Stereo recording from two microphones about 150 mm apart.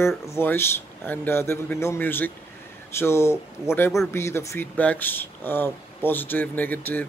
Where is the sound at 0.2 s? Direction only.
15° left (ahead or behind).